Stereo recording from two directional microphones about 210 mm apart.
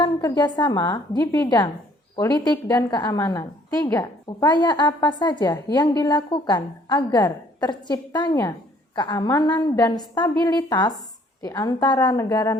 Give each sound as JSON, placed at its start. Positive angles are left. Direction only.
{"t": 0.0, "sound": "a woman's voice", "side_deg": 20}